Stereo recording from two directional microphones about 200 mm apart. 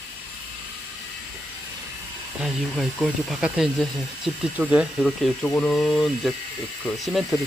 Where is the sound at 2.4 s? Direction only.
Centre (ahead or behind).